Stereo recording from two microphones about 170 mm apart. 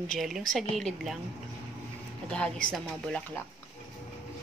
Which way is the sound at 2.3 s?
5° left (ahead or behind).